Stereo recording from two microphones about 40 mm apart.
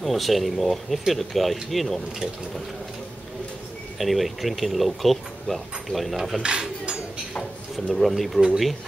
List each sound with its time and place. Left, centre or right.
0.0 s speech: centre
4.0 s speech: centre
6.4 s a sound: centre
7.7 s speech: centre